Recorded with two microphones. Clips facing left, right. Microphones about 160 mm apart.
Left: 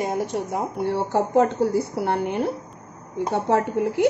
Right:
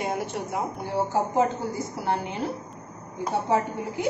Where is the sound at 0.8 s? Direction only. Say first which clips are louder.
Left 4 dB; 70° left (ahead or behind).